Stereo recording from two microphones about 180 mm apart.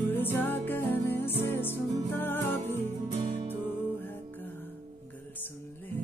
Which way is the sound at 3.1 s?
35° right (ahead or behind).